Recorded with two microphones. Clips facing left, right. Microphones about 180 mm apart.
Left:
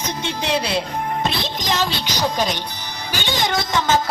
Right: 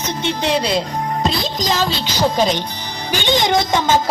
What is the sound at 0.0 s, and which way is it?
Speech, 10° left (ahead or behind).